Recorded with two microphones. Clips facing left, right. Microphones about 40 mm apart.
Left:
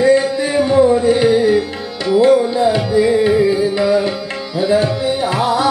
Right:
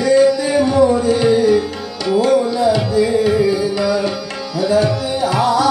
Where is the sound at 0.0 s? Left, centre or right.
Left.